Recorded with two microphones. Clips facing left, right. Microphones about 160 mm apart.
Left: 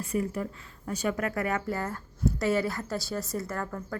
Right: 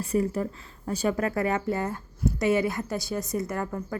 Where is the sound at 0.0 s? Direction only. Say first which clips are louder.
Right 4 dB; 35° right (ahead or behind).